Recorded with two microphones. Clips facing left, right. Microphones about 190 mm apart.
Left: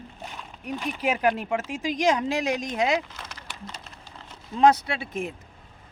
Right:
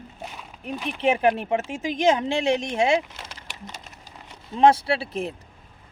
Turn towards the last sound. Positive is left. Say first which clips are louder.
# right 5 dB
turn(degrees=-35)  # may be behind; listen again after turning